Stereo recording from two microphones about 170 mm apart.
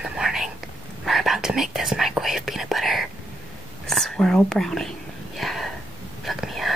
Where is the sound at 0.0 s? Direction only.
5° right (ahead or behind).